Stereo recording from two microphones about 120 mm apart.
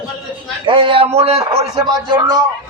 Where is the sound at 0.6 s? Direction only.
45° right (ahead or behind).